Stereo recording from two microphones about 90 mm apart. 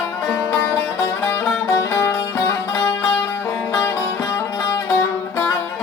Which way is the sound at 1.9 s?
35° left (ahead or behind).